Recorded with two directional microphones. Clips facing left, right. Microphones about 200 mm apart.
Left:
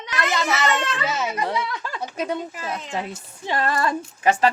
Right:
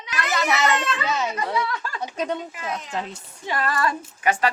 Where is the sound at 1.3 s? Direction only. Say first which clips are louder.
Even; 20° left (ahead or behind).